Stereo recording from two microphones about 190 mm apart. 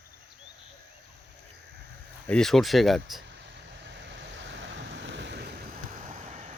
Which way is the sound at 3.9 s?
70° right (ahead or behind).